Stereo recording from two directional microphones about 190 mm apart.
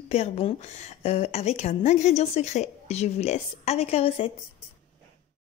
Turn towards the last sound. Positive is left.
turn(degrees=30)  # may be behind; listen again after turning